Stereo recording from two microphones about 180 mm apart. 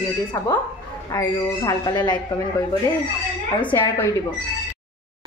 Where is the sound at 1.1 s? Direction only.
20° left (ahead or behind).